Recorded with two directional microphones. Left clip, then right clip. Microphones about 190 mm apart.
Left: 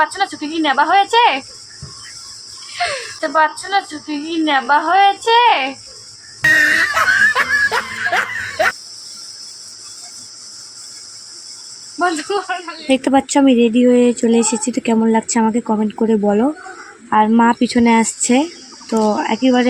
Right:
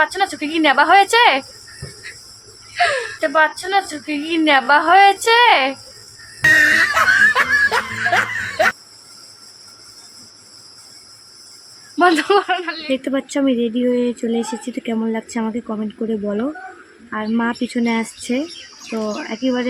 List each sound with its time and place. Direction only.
0.2 s a woman's voice: 30° right (ahead or behind)
3.2 s a woman's voice: 15° right (ahead or behind)
4.4 s a woman's voice: 30° right (ahead or behind)
6.4 s laughter: centre (ahead or behind)
11.9 s speech: 35° right (ahead or behind)
12.9 s speech: 20° left (ahead or behind)